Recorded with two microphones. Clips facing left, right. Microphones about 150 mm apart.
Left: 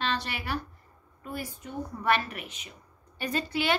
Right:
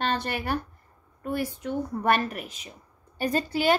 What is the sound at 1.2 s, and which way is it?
Speech, 65° right (ahead or behind).